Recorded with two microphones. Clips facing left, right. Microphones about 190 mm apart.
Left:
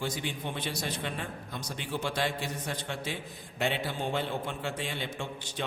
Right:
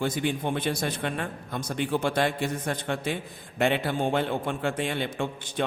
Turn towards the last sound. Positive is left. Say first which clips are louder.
# right 7 dB
turn(degrees=-55)  # may be behind; listen again after turning